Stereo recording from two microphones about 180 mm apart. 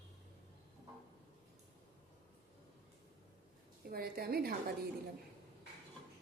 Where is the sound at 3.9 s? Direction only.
55° right (ahead or behind).